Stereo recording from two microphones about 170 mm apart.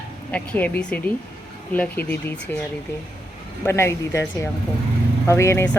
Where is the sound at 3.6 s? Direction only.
15° left (ahead or behind).